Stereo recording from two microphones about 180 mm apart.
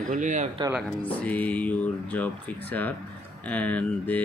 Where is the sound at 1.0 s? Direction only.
10° left (ahead or behind).